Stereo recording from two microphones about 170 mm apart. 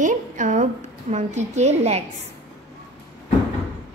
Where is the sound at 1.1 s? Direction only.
40° right (ahead or behind).